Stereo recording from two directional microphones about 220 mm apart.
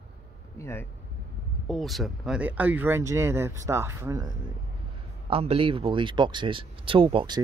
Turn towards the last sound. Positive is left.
turn(degrees=-25)  # may be behind; listen again after turning